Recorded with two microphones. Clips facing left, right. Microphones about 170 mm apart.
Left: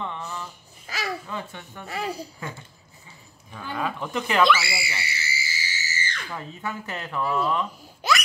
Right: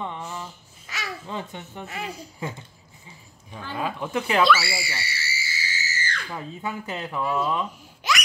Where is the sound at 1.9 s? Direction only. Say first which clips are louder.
Left 6 dB; 35° left (ahead or behind).